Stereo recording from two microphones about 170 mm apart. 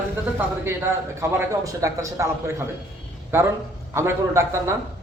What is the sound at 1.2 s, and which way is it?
A man's voice, 20° right (ahead or behind).